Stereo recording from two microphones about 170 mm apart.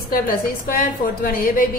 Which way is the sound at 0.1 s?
60° left (ahead or behind).